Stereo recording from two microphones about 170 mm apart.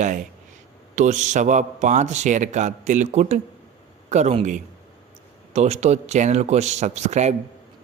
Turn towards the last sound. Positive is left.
turn(degrees=-40)  # may be behind; listen again after turning